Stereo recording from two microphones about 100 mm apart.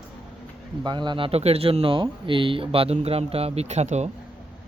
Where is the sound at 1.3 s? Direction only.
85° right.